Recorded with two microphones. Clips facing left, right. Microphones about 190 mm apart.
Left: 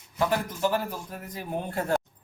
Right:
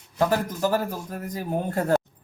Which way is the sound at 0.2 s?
40° right (ahead or behind).